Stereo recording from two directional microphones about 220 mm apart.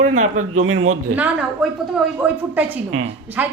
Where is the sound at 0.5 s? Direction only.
70° right (ahead or behind).